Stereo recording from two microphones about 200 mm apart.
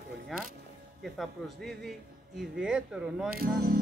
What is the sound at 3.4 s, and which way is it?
Speech, 50° right (ahead or behind).